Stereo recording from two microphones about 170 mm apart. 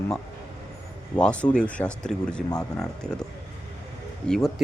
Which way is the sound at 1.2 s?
5° left (ahead or behind).